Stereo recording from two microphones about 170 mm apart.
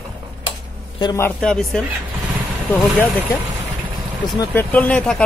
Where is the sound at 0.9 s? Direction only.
25° left (ahead or behind).